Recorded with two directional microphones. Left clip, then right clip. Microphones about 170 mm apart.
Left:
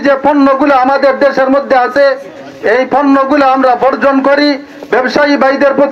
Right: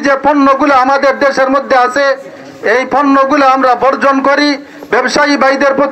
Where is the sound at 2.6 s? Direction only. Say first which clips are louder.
Left 1 dB; 40° left (ahead or behind).